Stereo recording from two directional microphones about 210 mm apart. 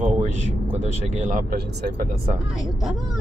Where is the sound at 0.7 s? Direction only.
30° right (ahead or behind).